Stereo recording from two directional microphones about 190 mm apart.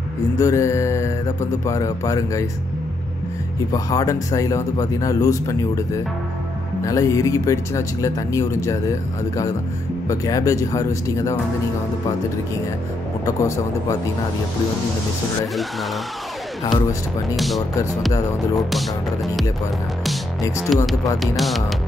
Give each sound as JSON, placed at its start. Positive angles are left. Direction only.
{"t": 0.4, "sound": "speech", "side_deg": 15}
{"t": 3.7, "sound": "speech", "side_deg": 20}
{"t": 6.8, "sound": "speech", "side_deg": 15}
{"t": 10.0, "sound": "speech", "side_deg": 20}
{"t": 13.2, "sound": "speech", "side_deg": 15}
{"t": 18.7, "sound": "music", "side_deg": 0}
{"t": 20.4, "sound": "speech", "side_deg": 15}
{"t": 21.2, "sound": "music", "side_deg": 0}